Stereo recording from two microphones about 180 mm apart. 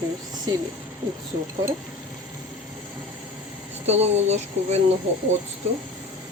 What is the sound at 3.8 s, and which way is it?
Speech, 35° right (ahead or behind).